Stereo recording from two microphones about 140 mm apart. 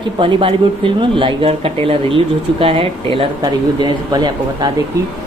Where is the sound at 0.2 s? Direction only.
40° right (ahead or behind).